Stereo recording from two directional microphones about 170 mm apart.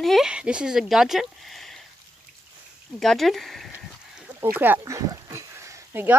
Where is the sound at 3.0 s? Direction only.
Centre (ahead or behind).